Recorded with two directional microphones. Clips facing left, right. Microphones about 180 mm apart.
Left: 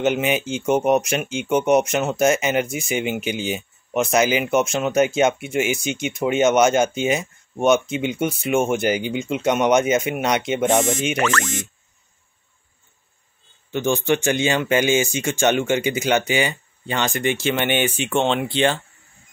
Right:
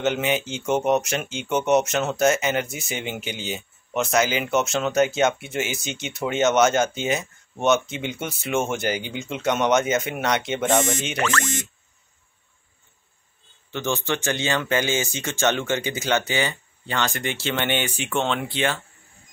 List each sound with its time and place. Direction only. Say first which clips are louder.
0.0 s speech: left 3 dB; 15° left (ahead or behind)
13.7 s speech: left 6 dB; 15° left (ahead or behind)